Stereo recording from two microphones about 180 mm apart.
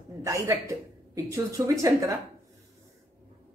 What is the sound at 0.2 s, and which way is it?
A woman's voice, 15° right (ahead or behind).